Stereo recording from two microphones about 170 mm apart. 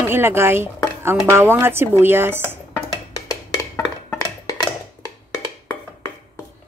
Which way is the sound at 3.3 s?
20° left (ahead or behind).